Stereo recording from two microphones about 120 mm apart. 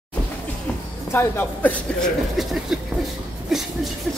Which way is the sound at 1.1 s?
15° left (ahead or behind).